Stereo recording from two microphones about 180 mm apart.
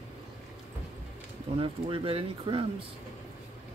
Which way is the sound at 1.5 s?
30° right (ahead or behind).